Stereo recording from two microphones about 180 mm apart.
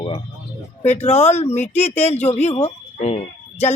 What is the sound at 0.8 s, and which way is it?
A woman's voice, 40° left (ahead or behind).